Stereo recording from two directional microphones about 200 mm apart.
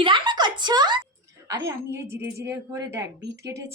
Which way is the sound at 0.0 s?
25° right (ahead or behind).